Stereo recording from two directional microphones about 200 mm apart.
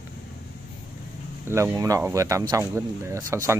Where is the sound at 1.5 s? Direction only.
15° right (ahead or behind).